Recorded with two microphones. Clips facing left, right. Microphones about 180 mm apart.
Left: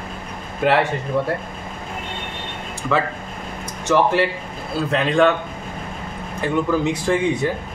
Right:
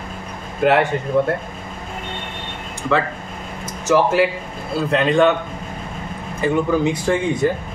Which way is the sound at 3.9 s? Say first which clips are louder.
Right 2 dB; 5° right (ahead or behind).